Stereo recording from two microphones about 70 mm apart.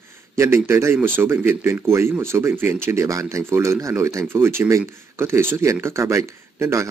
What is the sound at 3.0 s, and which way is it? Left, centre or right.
Speech, right.